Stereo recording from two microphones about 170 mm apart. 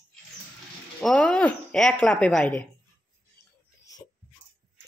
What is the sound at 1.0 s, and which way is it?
Speech, 5° left (ahead or behind).